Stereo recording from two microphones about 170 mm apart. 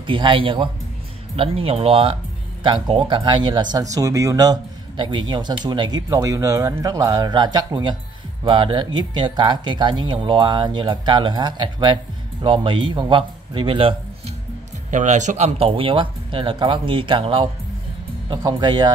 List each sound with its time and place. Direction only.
0.0 s speech: 30° right (ahead or behind)
14.9 s speech: 45° right (ahead or behind); by 18.9 s 25° right (ahead or behind)